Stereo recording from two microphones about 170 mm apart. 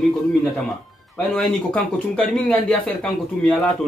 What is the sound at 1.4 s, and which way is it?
Speech, 5° left (ahead or behind).